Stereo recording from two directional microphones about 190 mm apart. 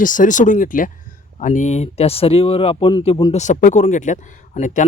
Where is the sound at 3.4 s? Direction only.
40° left (ahead or behind).